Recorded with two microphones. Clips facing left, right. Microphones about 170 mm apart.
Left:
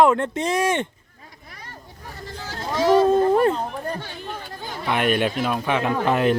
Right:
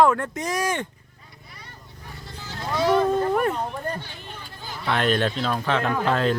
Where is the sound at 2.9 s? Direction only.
25° left (ahead or behind).